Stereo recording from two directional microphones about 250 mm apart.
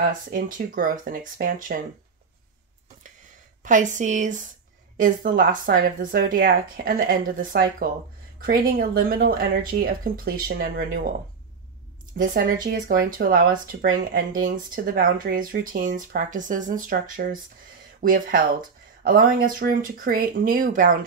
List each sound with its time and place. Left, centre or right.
0.0 s speech: right
3.6 s speech: right
12.2 s speech: right